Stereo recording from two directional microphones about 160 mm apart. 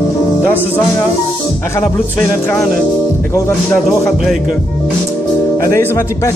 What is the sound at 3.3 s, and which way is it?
Speech, 15° left (ahead or behind).